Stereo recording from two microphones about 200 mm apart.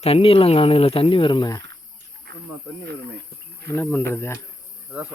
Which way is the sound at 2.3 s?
55° right (ahead or behind).